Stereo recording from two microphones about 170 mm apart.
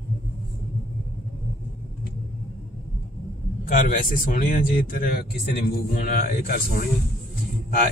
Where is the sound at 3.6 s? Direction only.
55° left (ahead or behind).